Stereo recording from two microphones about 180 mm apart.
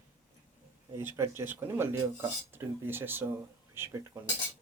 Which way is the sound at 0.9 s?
15° right (ahead or behind).